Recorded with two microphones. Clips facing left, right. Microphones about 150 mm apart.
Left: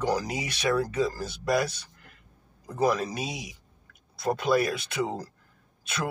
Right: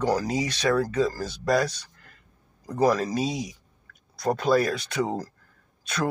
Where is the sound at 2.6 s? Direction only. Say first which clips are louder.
Right 3 dB; 35° right (ahead or behind).